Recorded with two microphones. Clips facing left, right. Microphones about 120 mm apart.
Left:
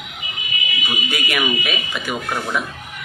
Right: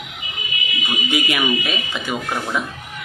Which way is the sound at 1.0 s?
20° right (ahead or behind).